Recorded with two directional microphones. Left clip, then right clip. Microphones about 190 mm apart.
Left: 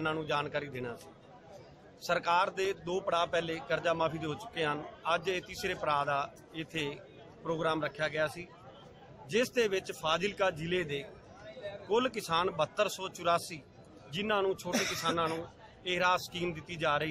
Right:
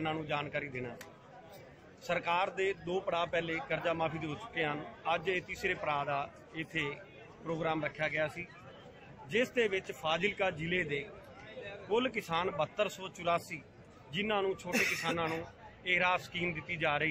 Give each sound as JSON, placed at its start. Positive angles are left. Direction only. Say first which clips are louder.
{"t": 0.0, "sound": "a man's voice", "louder": "left 3 dB", "side_deg": 20}
{"t": 2.0, "sound": "a man's voice", "louder": "left 3 dB", "side_deg": 20}
{"t": 14.7, "sound": "speech", "louder": "right 1 dB", "side_deg": 35}
{"t": 15.0, "sound": "a man's voice", "louder": "left 3 dB", "side_deg": 20}